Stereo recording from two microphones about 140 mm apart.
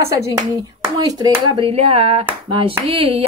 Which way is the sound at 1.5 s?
40° right (ahead or behind).